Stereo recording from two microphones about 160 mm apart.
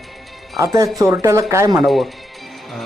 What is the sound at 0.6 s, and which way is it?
Speech, 20° right (ahead or behind).